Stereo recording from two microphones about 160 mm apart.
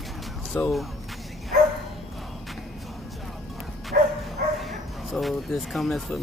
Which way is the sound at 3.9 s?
70° right (ahead or behind).